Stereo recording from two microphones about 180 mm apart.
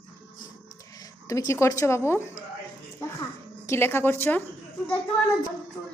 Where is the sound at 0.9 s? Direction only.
20° left (ahead or behind).